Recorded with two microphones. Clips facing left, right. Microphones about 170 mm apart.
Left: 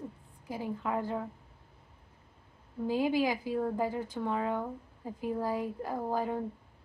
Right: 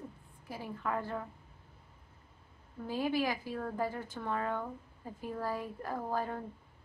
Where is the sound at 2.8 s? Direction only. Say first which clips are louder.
Left 4 dB; 15° left (ahead or behind).